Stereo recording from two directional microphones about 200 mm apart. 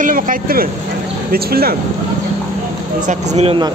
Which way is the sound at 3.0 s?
35° right (ahead or behind).